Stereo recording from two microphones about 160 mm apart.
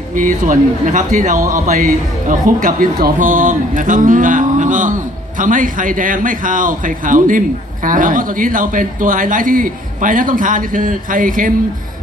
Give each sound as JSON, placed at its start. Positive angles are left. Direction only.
{"t": 0.1, "sound": "speech", "side_deg": -55}